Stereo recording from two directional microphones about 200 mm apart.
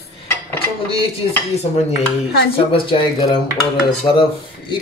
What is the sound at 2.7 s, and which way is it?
Speech, 25° left (ahead or behind).